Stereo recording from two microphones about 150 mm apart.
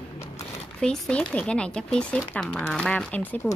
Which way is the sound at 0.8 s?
5° left (ahead or behind).